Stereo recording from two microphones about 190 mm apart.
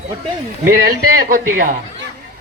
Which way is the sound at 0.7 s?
55° right (ahead or behind).